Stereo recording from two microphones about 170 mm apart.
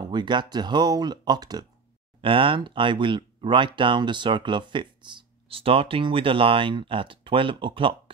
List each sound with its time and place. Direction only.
0.1 s speech: 25° right (ahead or behind)